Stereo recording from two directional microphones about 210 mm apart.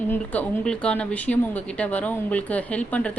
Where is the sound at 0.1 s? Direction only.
5° left (ahead or behind).